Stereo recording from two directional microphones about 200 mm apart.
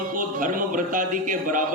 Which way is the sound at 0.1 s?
45° right (ahead or behind).